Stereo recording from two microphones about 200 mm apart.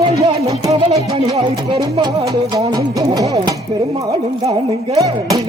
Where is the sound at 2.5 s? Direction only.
20° right (ahead or behind).